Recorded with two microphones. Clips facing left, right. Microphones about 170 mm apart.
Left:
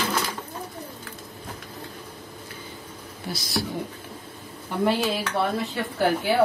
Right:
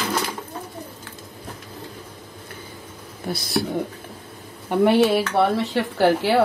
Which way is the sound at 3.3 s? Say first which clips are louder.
Right 5 dB; 60° right (ahead or behind).